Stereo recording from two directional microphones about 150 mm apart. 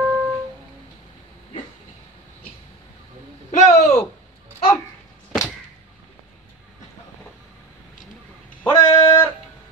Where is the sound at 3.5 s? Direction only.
50° left (ahead or behind).